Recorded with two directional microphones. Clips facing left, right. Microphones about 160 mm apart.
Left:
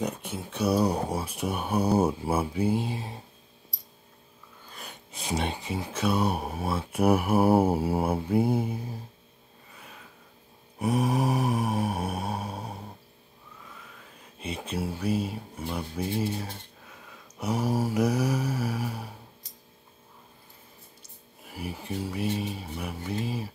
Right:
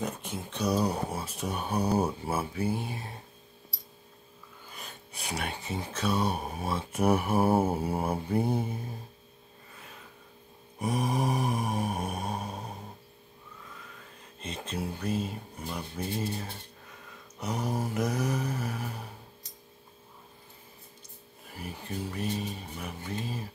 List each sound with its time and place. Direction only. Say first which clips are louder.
0.0 s speech: left 3 dB; 10° left (ahead or behind)
5.1 s speech: left 5 dB; 25° left (ahead or behind); by 8.9 s 5° left (ahead or behind)
10.8 s mantra: left 4 dB; 5° left (ahead or behind)
14.4 s speech: left 3 dB; 10° left (ahead or behind)
21.5 s speech: left 4 dB; 10° left (ahead or behind)